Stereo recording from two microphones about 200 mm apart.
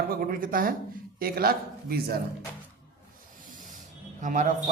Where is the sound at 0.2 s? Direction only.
45° right (ahead or behind).